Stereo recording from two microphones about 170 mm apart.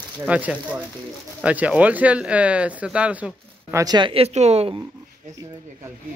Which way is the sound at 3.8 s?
25° right (ahead or behind).